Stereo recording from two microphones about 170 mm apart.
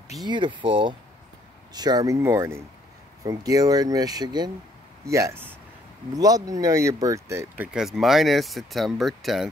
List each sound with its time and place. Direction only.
0.2 s speech: 25° right (ahead or behind); by 9.5 s centre (ahead or behind)